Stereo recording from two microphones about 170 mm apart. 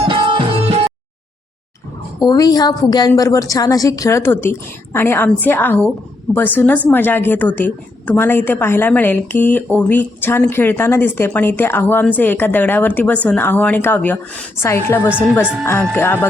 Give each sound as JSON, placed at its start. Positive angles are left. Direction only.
{"t": 0.0, "sound": "music", "side_deg": -30}
{"t": 2.2, "sound": "a woman's voice", "side_deg": 20}